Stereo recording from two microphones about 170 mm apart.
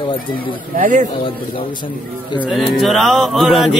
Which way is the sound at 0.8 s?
50° right (ahead or behind).